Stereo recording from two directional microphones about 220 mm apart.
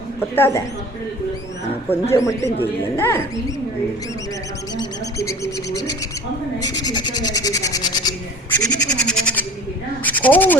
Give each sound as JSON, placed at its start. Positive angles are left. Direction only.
{"t": 0.2, "sound": "speech", "side_deg": 10}
{"t": 1.9, "sound": "speech", "side_deg": 15}
{"t": 5.7, "sound": "owl", "side_deg": 50}
{"t": 6.6, "sound": "speech", "side_deg": 15}
{"t": 9.0, "sound": "bird", "side_deg": 5}
{"t": 10.0, "sound": "speech", "side_deg": 5}